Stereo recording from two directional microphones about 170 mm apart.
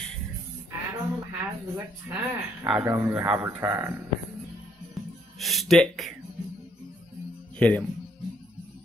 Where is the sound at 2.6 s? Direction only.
5° right (ahead or behind).